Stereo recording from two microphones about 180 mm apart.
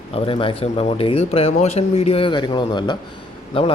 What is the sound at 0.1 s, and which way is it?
Speech, 30° left (ahead or behind).